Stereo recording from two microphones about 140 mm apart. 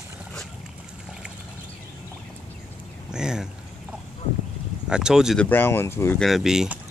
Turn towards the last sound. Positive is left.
turn(degrees=-5)  # may be behind; listen again after turning